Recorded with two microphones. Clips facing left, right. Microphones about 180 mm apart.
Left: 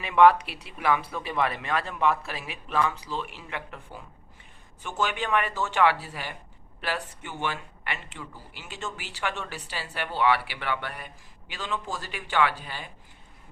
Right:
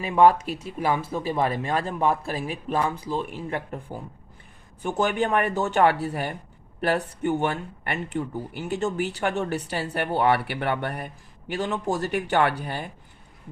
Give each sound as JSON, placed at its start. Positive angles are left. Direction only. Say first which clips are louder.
{"t": 0.0, "sound": "a man's voice", "louder": "right 1 dB", "side_deg": -40}
{"t": 5.5, "sound": "speech", "louder": "right 6 dB", "side_deg": -60}
{"t": 5.7, "sound": "a man's voice", "louder": "right 2 dB", "side_deg": -50}